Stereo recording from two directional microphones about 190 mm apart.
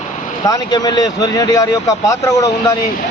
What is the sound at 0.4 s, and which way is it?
A man's voice, 20° left (ahead or behind).